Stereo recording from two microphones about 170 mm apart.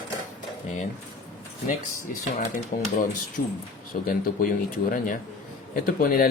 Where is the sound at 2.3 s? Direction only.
55° left (ahead or behind).